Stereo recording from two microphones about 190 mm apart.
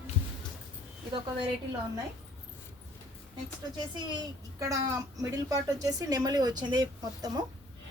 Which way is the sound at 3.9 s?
25° right (ahead or behind).